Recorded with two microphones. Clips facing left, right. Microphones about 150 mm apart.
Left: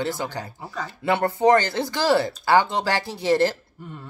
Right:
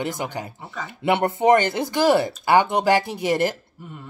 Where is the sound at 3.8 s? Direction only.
5° right (ahead or behind).